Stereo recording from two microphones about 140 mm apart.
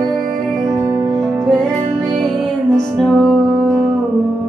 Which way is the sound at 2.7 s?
Centre (ahead or behind).